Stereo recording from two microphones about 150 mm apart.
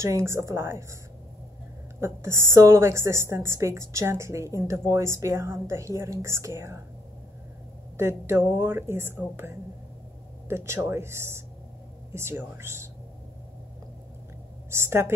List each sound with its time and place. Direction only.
0.0 s a woman's voice: 20° right (ahead or behind)
2.0 s a woman's voice: 15° right (ahead or behind)
8.0 s speech: 15° right (ahead or behind)
14.7 s speech: 15° right (ahead or behind)